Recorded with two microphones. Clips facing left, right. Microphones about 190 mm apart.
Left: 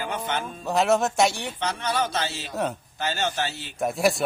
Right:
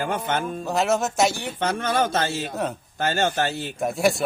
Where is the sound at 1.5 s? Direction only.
50° right (ahead or behind).